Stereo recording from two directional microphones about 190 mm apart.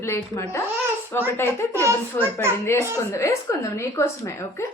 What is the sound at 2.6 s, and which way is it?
A woman's voice, 15° left (ahead or behind).